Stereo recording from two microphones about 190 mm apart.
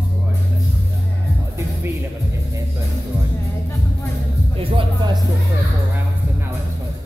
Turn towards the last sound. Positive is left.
turn(degrees=-25)  # may be behind; listen again after turning